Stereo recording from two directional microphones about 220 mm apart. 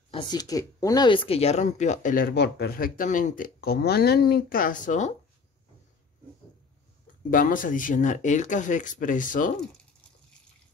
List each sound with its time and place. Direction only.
0.1 s speech: 20° left (ahead or behind); by 5.1 s 35° left (ahead or behind)
7.2 s speech: 40° left (ahead or behind)